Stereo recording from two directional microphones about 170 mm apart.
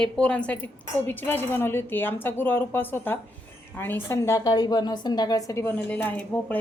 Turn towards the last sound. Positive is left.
turn(degrees=10)  # may be behind; listen again after turning